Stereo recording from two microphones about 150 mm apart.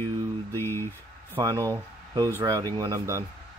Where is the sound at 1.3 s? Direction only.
25° right (ahead or behind).